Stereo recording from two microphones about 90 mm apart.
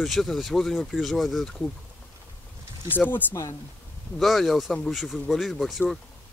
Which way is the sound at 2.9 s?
20° left (ahead or behind).